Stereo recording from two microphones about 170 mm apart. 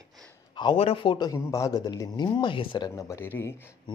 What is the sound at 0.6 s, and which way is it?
A man's voice, 30° left (ahead or behind).